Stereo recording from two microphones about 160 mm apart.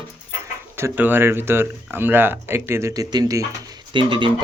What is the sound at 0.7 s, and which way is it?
Speech, 15° right (ahead or behind).